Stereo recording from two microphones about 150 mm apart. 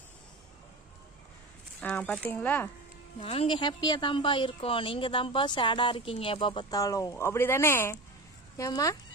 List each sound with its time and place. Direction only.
1.8 s speech: 10° left (ahead or behind)
3.2 s speech: 40° left (ahead or behind); by 9.0 s 20° left (ahead or behind)